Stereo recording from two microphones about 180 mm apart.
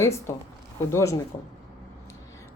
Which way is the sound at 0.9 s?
15° left (ahead or behind).